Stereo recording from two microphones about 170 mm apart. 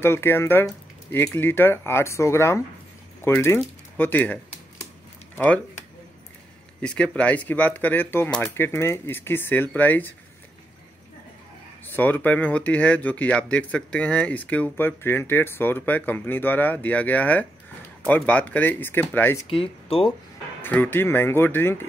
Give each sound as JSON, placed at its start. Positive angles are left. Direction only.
{"t": 0.0, "sound": "speech", "side_deg": 15}
{"t": 6.8, "sound": "speech", "side_deg": 5}
{"t": 11.8, "sound": "speech", "side_deg": 10}
{"t": 19.5, "sound": "speech", "side_deg": 35}
{"t": 20.6, "sound": "speech", "side_deg": 10}